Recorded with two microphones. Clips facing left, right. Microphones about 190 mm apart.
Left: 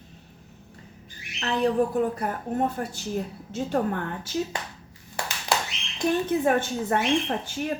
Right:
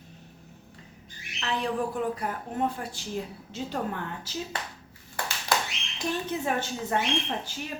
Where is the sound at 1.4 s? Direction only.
45° left (ahead or behind).